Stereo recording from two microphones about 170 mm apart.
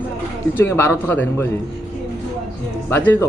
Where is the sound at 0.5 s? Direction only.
15° left (ahead or behind).